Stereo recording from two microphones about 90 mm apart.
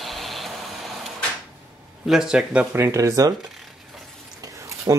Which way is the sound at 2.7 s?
35° right (ahead or behind).